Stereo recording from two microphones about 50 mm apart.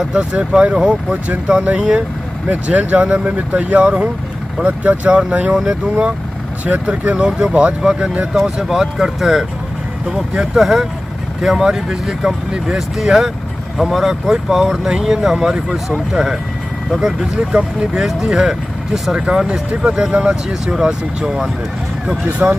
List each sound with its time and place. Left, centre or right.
0.1 s speech: right
5.5 s speech: centre
6.6 s speech: right
7.2 s speech: centre
7.8 s speech: centre
8.1 s speech: right
8.4 s speech: centre
19.8 s speech: centre
22.4 s speech: right